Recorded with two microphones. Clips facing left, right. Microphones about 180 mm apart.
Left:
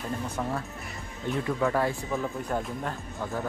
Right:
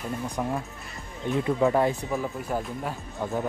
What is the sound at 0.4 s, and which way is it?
Speech, 15° right (ahead or behind).